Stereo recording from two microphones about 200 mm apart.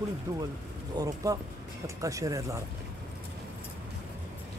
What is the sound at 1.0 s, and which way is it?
Speech, 20° right (ahead or behind).